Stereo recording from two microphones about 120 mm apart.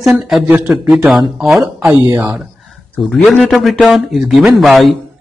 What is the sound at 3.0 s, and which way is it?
Speech, centre (ahead or behind).